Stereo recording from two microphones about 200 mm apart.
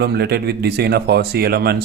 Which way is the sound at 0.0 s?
55° right (ahead or behind).